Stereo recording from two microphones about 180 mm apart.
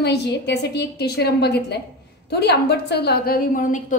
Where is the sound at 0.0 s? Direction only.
65° left (ahead or behind).